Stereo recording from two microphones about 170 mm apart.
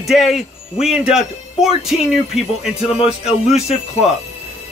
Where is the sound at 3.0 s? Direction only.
35° left (ahead or behind).